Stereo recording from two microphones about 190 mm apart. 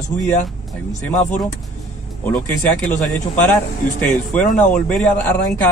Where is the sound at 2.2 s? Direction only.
10° left (ahead or behind).